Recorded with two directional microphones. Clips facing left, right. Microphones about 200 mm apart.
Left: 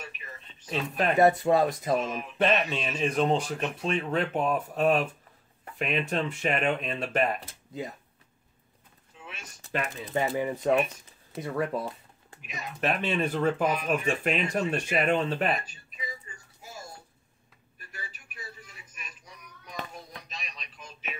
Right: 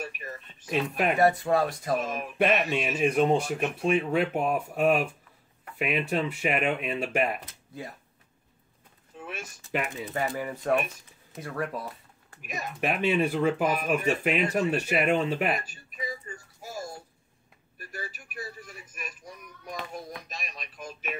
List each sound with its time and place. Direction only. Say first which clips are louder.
0.7 s speech: right 1 dB; 10° right (ahead or behind)
1.1 s speech: left 3 dB; 20° left (ahead or behind)
2.3 s speech: right 1 dB; 10° right (ahead or behind)
7.3 s speech: left 3 dB; 20° left (ahead or behind)
9.1 s a sound: right 7 dB; 50° right (ahead or behind)
9.7 s speech: right 1 dB; 15° right (ahead or behind)
10.3 s speech: left 4 dB; 20° left (ahead or behind)
11.4 s a sound: left 3 dB; 20° left (ahead or behind)
12.4 s speech: right 5 dB; 50° right (ahead or behind)
12.8 s speech: right 2 dB; 10° right (ahead or behind)
16.3 s a sound: right 8 dB; 45° right (ahead or behind)
17.7 s a sound: right 6 dB; 45° right (ahead or behind)
20.2 s radio: right 3 dB; 45° right (ahead or behind)